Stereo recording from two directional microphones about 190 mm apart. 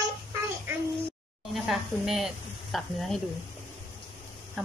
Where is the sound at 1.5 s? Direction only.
Centre (ahead or behind).